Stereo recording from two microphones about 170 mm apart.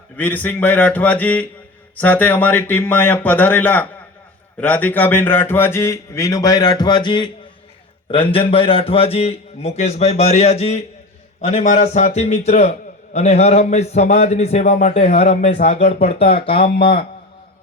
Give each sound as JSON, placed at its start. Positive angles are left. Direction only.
{"t": 0.2, "sound": "a man's voice", "side_deg": 10}
{"t": 16.7, "sound": "a man's voice", "side_deg": 65}